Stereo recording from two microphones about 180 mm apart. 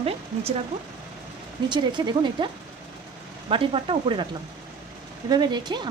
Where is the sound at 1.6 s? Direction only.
25° right (ahead or behind).